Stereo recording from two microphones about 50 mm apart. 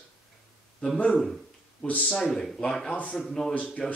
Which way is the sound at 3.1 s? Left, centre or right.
Centre.